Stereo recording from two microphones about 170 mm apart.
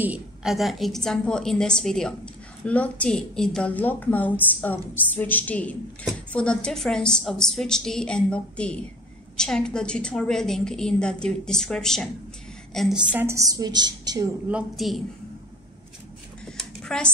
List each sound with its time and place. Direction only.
0.0 s a woman's voice: 5° right (ahead or behind); by 14.3 s 20° right (ahead or behind)
14.5 s a woman's voice: centre (ahead or behind)
16.4 s a sound: 5° left (ahead or behind)